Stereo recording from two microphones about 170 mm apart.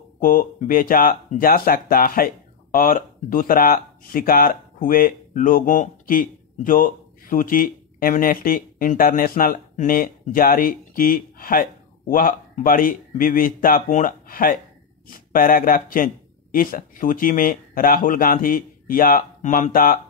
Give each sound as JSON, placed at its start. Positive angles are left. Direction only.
{"t": 0.2, "sound": "speech", "side_deg": 55}